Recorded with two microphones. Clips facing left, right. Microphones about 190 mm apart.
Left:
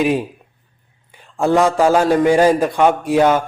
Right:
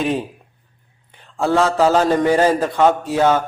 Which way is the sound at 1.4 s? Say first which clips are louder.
Left 2 dB; 15° left (ahead or behind).